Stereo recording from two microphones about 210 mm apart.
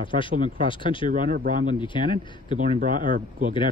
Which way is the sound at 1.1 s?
40° right (ahead or behind).